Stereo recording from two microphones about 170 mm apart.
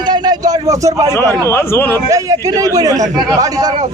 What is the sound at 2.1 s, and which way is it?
A man's voice, 20° right (ahead or behind).